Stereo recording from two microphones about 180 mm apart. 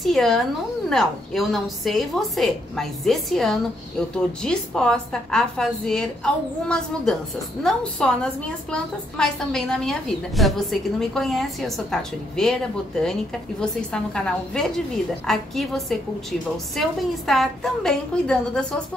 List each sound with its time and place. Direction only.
0.0 s a woman's voice: centre (ahead or behind)
13.6 s a woman's voice: 5° left (ahead or behind)